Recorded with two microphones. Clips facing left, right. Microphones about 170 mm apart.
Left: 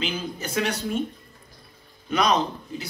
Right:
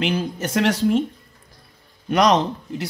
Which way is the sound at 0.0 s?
80° right.